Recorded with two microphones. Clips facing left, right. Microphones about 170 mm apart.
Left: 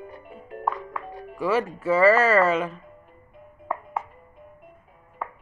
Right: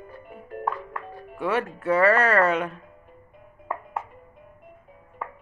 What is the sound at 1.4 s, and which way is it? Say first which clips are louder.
Speech: left 2 dB; centre (ahead or behind).